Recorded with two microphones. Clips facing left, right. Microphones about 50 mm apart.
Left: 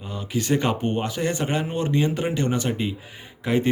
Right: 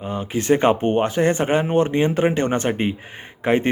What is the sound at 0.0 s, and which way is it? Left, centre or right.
Speech, right.